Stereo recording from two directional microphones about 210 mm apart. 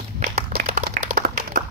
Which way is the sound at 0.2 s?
40° right (ahead or behind).